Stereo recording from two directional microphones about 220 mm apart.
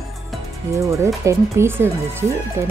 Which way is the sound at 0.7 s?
15° right (ahead or behind).